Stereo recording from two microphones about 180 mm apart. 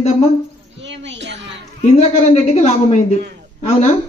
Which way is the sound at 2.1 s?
35° left (ahead or behind).